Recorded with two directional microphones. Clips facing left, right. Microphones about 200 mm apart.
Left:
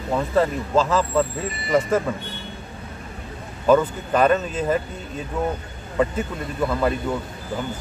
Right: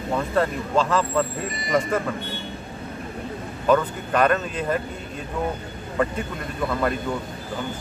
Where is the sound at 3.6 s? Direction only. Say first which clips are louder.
Left 3 dB; 5° left (ahead or behind).